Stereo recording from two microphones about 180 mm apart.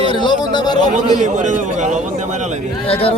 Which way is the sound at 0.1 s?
25° left (ahead or behind).